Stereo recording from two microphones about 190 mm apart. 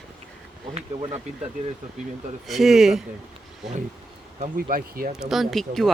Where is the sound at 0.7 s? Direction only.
30° right (ahead or behind).